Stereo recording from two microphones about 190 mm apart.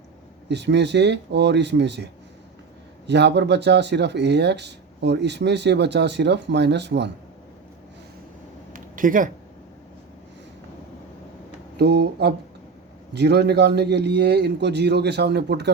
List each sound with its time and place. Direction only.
0.4 s speech: 65° right (ahead or behind)
3.1 s speech: 65° right (ahead or behind)
8.7 s a sound: 45° right (ahead or behind)
11.8 s speech: 60° right (ahead or behind)